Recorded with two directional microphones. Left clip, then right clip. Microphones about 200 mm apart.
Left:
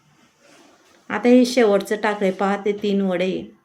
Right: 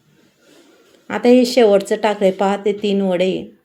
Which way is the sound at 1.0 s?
10° right (ahead or behind).